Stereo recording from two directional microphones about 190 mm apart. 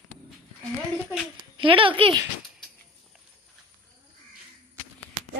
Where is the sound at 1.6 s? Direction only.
25° right (ahead or behind).